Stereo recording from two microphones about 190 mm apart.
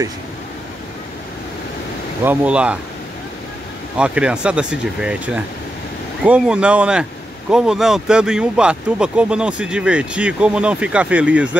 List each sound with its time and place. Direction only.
2.2 s speech: 5° right (ahead or behind)
3.9 s speech: 5° right (ahead or behind)